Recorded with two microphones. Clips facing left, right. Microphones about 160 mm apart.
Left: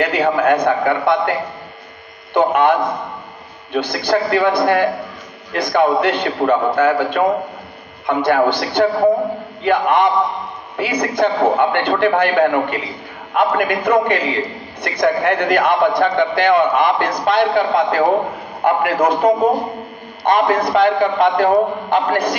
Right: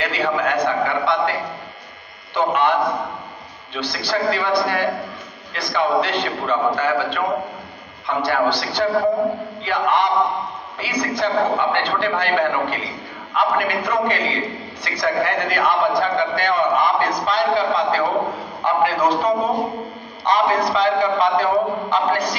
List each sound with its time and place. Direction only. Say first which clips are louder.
0.0 s a man's voice: left 6 dB; 55° left (ahead or behind)
2.3 s a man's voice: left 4 dB; 55° left (ahead or behind)